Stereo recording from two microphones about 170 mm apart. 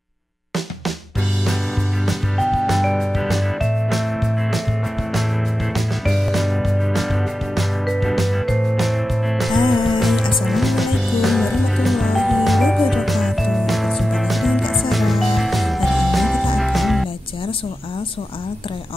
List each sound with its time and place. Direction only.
2.0 s music: centre (ahead or behind)
5.8 s music: centre (ahead or behind)
9.6 s music: 25° left (ahead or behind)
9.9 s music: centre (ahead or behind)